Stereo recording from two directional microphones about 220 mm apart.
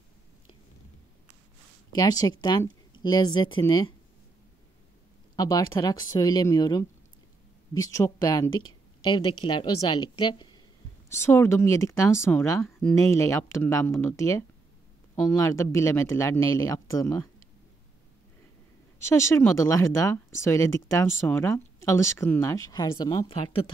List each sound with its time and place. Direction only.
2.0 s speech: 15° left (ahead or behind)
5.3 s speech: 15° left (ahead or behind)
15.2 s speech: 15° left (ahead or behind)
18.9 s speech: 10° left (ahead or behind)